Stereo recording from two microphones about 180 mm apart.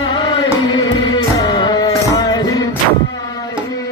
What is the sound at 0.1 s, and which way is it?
Music, 25° left (ahead or behind).